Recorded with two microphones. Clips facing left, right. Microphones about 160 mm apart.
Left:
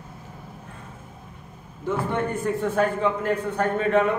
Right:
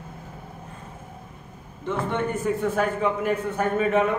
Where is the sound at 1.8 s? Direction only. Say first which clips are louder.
Left 1 dB; centre (ahead or behind).